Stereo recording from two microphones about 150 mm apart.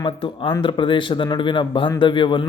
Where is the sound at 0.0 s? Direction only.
30° left (ahead or behind).